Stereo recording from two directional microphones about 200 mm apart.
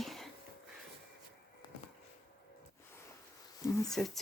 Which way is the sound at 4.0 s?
5° left (ahead or behind).